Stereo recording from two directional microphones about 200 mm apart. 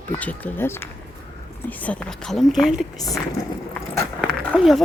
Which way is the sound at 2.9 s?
20° left (ahead or behind).